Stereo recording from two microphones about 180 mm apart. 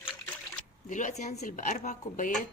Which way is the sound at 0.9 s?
45° left (ahead or behind).